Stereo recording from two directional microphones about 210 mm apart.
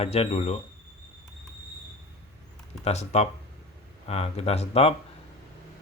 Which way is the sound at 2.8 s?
30° left (ahead or behind).